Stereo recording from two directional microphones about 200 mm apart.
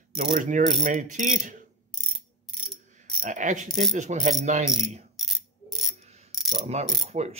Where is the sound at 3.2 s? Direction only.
40° right (ahead or behind).